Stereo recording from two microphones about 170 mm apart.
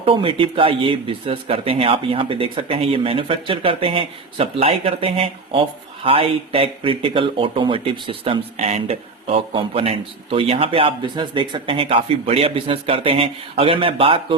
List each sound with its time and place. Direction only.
0.0 s speech: 30° right (ahead or behind)